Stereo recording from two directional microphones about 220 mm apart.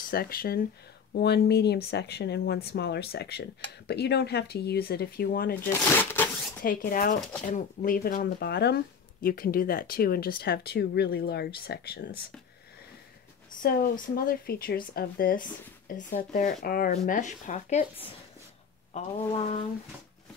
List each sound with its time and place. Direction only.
0.1 s speech: 40° left (ahead or behind)
5.7 s speech: 10° left (ahead or behind)
6.6 s speech: 40° left (ahead or behind)
13.6 s speech: 40° left (ahead or behind)